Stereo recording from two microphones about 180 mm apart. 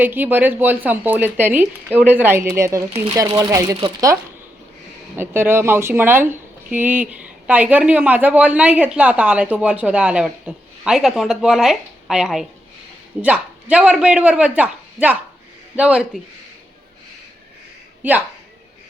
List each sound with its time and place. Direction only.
0.0 s speech: 10° right (ahead or behind)
2.9 s speech: 30° right (ahead or behind)
3.2 s speech: 20° right (ahead or behind)
18.0 s speech: 10° right (ahead or behind)